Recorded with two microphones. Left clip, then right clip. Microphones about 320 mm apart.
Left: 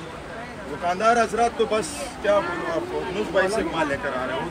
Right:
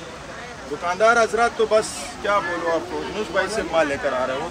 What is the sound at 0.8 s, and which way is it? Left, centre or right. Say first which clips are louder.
Speech: right 3 dB; centre.